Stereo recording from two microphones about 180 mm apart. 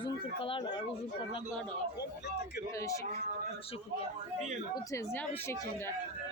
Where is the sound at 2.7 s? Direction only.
15° left (ahead or behind).